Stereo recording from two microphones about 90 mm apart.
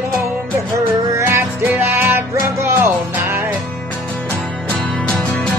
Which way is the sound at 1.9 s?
25° right (ahead or behind).